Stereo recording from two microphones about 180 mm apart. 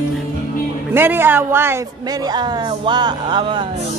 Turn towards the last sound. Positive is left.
turn(degrees=-25)  # may be behind; listen again after turning